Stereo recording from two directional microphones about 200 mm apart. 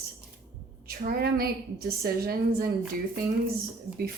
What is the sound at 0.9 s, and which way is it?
Speech, 50° right (ahead or behind).